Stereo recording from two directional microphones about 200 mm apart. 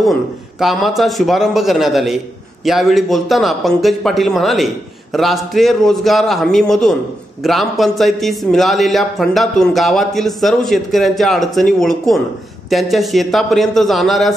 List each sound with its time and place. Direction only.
0.0 s a man's voice: centre (ahead or behind)